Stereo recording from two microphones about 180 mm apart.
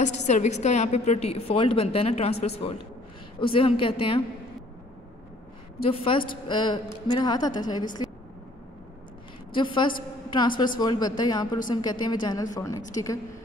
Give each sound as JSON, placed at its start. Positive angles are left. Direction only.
{"t": 0.0, "sound": "a woman's voice", "side_deg": 40}
{"t": 5.8, "sound": "a woman's voice", "side_deg": 30}
{"t": 9.5, "sound": "a woman's voice", "side_deg": 25}